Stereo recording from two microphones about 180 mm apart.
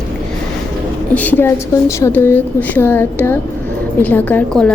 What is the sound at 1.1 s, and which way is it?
A woman's voice, 10° left (ahead or behind).